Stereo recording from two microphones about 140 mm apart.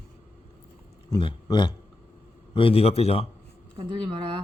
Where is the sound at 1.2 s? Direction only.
35° left (ahead or behind).